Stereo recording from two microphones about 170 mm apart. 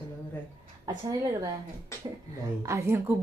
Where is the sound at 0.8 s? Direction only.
20° right (ahead or behind).